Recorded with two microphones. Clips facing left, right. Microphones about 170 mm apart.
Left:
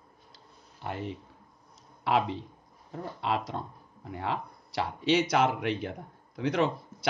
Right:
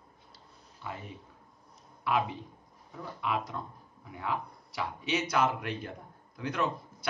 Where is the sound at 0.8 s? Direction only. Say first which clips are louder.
Left 6 dB; 75° left (ahead or behind).